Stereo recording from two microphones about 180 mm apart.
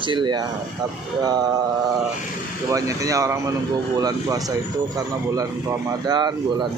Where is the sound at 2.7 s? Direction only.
20° right (ahead or behind).